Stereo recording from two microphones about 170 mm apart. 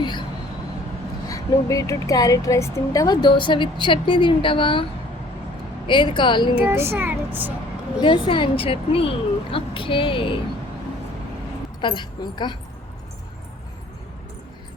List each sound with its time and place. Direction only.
0.0 s a sound: 25° left (ahead or behind)
1.3 s speech: 20° left (ahead or behind)
5.9 s speech: 30° left (ahead or behind)
6.6 s a child's voice: 15° right (ahead or behind)
8.0 s a woman's voice: 30° left (ahead or behind)
11.8 s speech: 25° left (ahead or behind)